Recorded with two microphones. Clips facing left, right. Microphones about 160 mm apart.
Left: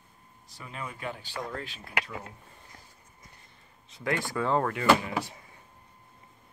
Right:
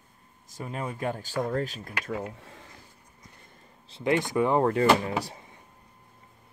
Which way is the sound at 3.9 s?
25° right (ahead or behind).